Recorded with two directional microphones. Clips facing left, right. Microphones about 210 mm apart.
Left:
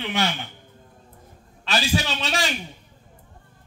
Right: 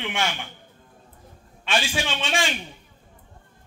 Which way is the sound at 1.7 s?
35° left (ahead or behind).